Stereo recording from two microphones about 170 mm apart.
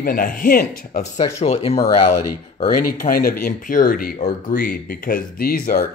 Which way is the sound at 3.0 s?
60° left (ahead or behind).